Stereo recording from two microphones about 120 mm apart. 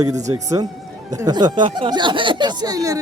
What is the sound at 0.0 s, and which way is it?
Speech, 30° right (ahead or behind).